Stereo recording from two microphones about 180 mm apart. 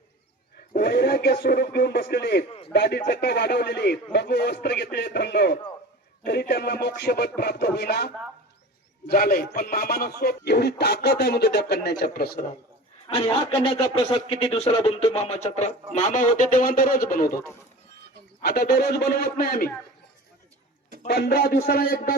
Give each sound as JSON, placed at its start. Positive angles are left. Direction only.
{"t": 0.7, "sound": "speech", "side_deg": 65}
{"t": 9.0, "sound": "speech", "side_deg": 55}
{"t": 13.1, "sound": "speech", "side_deg": 30}
{"t": 18.4, "sound": "speech", "side_deg": 60}
{"t": 21.1, "sound": "speech", "side_deg": 60}